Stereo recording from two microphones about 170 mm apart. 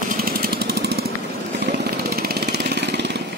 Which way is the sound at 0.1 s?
60° right (ahead or behind).